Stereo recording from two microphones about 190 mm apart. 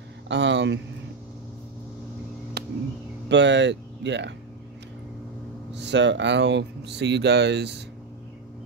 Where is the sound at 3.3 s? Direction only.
70° right (ahead or behind).